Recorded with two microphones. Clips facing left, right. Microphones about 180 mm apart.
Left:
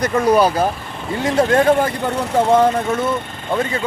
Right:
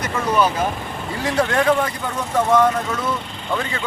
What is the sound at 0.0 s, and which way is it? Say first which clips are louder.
Speech: left 5 dB; 35° left (ahead or behind).